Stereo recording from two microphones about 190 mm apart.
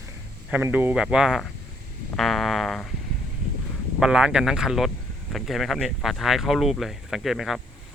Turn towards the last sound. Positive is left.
turn(degrees=0)  # may be behind; listen again after turning